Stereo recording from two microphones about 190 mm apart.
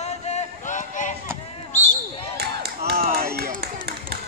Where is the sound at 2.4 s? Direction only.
55° right (ahead or behind).